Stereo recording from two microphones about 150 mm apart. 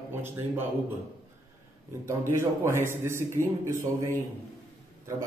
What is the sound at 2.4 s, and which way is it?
Speech, 20° right (ahead or behind).